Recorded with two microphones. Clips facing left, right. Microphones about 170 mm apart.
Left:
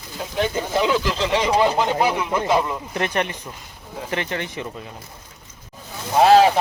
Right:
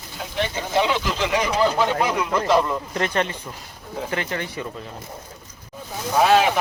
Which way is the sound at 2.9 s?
20° left (ahead or behind).